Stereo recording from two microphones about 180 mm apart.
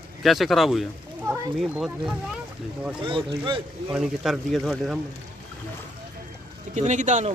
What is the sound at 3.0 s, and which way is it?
Speech, 30° right (ahead or behind).